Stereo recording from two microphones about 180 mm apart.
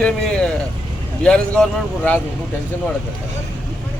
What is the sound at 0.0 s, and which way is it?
Vehicle, 5° left (ahead or behind).